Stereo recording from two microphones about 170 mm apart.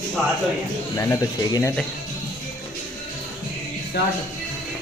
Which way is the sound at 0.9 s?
20° left (ahead or behind).